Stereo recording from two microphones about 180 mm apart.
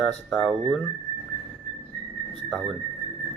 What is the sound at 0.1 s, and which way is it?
Speech, 5° left (ahead or behind).